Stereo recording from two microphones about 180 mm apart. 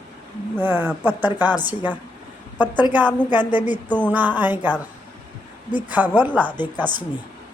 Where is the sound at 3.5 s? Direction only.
10° right (ahead or behind).